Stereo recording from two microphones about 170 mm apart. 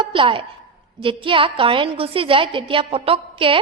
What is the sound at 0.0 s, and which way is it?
A woman's voice, 30° right (ahead or behind).